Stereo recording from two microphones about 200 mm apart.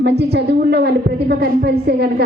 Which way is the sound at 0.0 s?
55° right (ahead or behind).